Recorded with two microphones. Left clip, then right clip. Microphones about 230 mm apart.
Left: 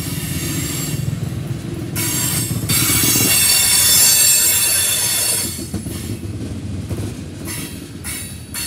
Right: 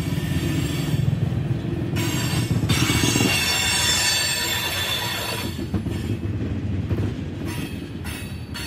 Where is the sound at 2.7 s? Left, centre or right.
Left.